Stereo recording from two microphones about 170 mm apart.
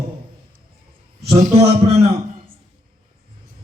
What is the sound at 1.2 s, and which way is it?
Speech, 40° right (ahead or behind).